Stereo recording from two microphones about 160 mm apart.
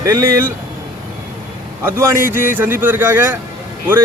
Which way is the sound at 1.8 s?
15° right (ahead or behind).